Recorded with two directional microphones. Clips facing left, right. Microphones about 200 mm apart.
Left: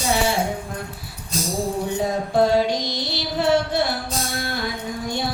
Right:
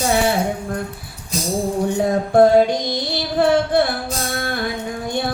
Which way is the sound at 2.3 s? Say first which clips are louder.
Right 6 dB; 55° right (ahead or behind).